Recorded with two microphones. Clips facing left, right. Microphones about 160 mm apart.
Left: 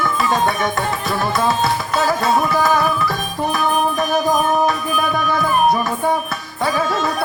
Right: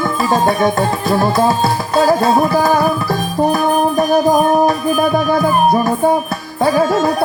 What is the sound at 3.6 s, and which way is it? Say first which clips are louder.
Music: right 5 dB; 40° right (ahead or behind).